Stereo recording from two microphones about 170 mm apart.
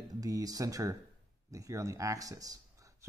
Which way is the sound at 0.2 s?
20° right (ahead or behind).